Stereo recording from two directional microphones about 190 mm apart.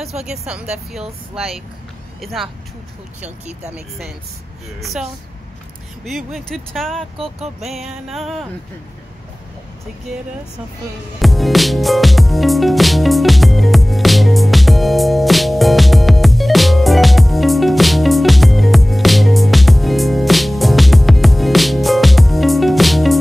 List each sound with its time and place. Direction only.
0.2 s speech: 5° right (ahead or behind)
3.3 s speech: 35° right (ahead or behind)
4.7 s speech: centre (ahead or behind)
7.2 s speech: 35° right (ahead or behind)
7.6 s speech: centre (ahead or behind)
11.1 s music: centre (ahead or behind)